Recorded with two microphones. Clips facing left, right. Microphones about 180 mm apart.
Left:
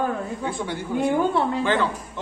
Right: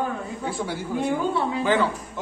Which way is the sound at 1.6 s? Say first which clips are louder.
Right 4 dB; 10° right (ahead or behind).